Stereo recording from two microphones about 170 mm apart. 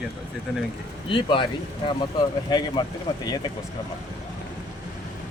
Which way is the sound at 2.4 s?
25° left (ahead or behind).